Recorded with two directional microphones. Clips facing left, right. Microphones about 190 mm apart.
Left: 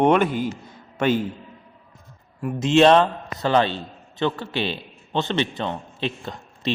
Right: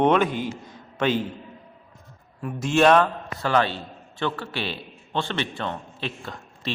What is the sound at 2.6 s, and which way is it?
A man's voice, 20° left (ahead or behind).